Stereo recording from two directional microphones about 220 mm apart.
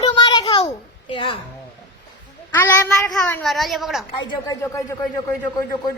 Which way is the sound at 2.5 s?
10° left (ahead or behind).